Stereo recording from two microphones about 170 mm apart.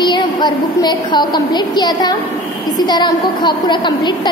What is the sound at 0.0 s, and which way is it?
A woman's voice, 25° left (ahead or behind).